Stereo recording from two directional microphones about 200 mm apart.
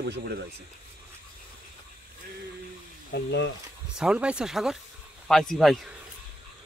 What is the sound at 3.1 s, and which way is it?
Speech, 60° left (ahead or behind).